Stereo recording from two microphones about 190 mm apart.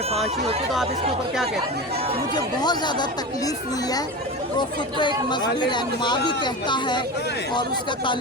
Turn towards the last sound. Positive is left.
turn(degrees=25)  # may be behind; listen again after turning